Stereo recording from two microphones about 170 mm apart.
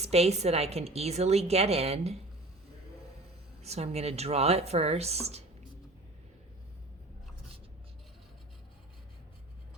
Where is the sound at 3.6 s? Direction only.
40° right (ahead or behind).